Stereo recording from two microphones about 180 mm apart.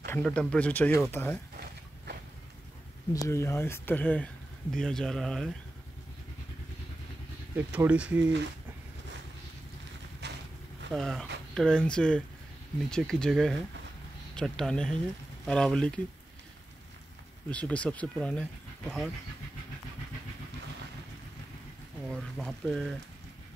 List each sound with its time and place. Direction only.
0.0 s speech: 10° left (ahead or behind)
3.3 s speech: 15° left (ahead or behind)
7.5 s speech: 10° right (ahead or behind)
10.2 s vehicle: 70° right (ahead or behind)
10.9 s speech: centre (ahead or behind)
17.5 s speech: 5° left (ahead or behind)
22.1 s speech: centre (ahead or behind)